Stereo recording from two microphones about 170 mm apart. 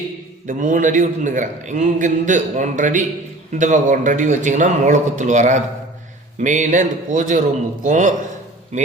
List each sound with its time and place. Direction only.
0.4 s a man's voice: 50° right (ahead or behind)